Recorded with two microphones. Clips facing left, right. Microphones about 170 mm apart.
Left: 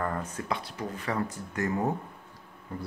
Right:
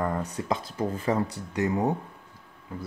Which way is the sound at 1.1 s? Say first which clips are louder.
Right 5 dB; 20° right (ahead or behind).